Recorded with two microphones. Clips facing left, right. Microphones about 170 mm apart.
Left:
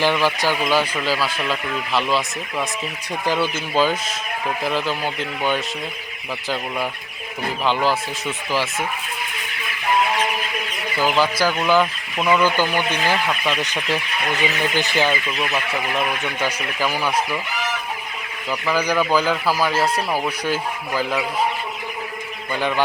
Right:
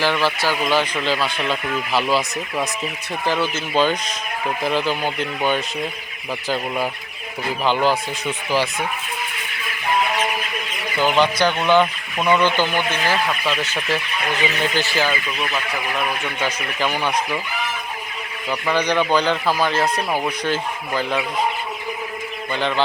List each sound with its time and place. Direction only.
0.0 s speech: 15° left (ahead or behind); by 2.6 s 5° right (ahead or behind)
3.2 s speech: 10° left (ahead or behind)
7.6 s speech: centre (ahead or behind)
10.9 s speech: 5° left (ahead or behind)
15.4 s speech: 5° left (ahead or behind)
18.7 s speech: 5° left (ahead or behind)